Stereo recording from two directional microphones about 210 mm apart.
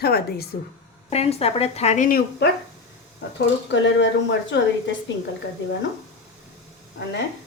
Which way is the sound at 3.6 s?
60° left (ahead or behind).